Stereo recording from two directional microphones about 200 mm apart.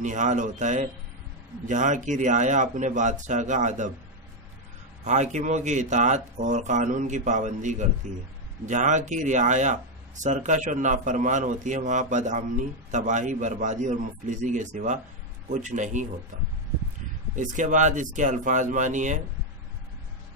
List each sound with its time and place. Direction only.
0.0 s speech: 40° right (ahead or behind)
5.0 s speech: 35° right (ahead or behind)
17.4 s speech: 40° right (ahead or behind)